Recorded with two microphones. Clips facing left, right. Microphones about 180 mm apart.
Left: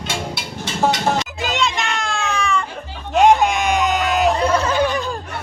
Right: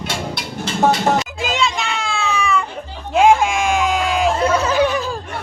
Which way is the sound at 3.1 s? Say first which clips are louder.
Even; centre (ahead or behind).